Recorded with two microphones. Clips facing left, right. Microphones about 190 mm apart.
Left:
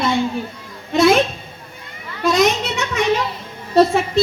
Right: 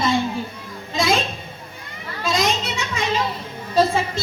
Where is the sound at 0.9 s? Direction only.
65° left (ahead or behind).